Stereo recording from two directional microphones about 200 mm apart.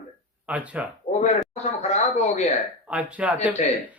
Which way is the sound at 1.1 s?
35° left (ahead or behind).